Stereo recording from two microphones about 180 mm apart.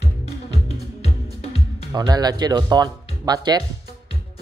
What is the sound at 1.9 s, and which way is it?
Speech, 20° right (ahead or behind).